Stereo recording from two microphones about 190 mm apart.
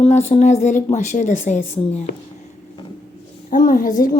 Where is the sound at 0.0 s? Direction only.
35° left (ahead or behind).